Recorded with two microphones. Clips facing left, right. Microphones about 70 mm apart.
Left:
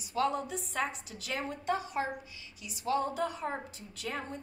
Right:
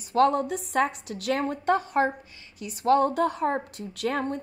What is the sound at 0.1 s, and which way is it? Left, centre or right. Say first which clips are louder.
A woman's voice: right 10 dB; right.